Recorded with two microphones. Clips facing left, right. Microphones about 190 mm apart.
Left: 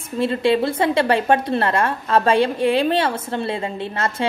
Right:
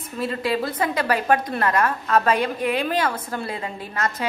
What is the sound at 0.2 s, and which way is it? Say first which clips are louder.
A woman's voice: left 6 dB; 25° left (ahead or behind).